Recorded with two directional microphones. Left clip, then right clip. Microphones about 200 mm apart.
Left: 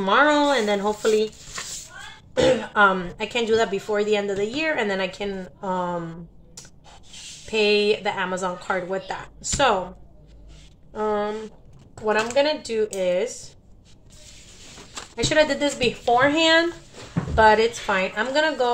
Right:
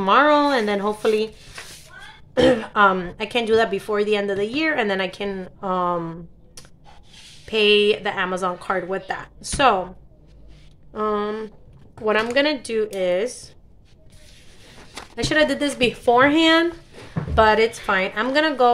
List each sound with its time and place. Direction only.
0.0 s a woman's voice: 30° right (ahead or behind)
2.4 s a woman's voice: 35° right (ahead or behind)
10.9 s a woman's voice: 35° right (ahead or behind)
12.0 s a woman's voice: 45° right (ahead or behind)
15.1 s a woman's voice: 35° right (ahead or behind)